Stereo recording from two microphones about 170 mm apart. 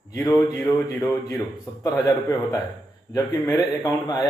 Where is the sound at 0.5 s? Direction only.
20° left (ahead or behind).